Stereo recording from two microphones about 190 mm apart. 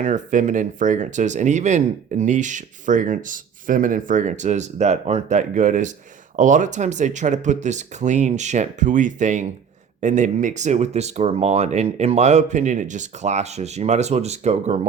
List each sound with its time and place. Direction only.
0.0 s speech: 40° right (ahead or behind)